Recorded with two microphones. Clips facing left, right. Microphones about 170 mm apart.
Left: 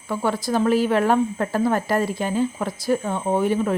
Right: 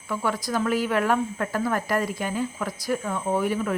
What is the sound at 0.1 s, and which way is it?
Speech, 30° left (ahead or behind).